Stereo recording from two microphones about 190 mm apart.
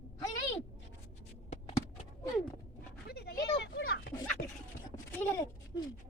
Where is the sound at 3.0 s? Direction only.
55° left (ahead or behind).